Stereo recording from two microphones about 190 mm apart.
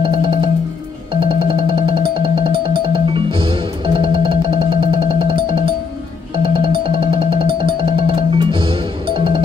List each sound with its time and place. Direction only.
0.0 s music: 25° right (ahead or behind)